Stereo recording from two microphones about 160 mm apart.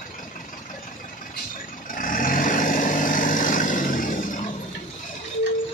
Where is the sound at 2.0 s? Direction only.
60° left (ahead or behind).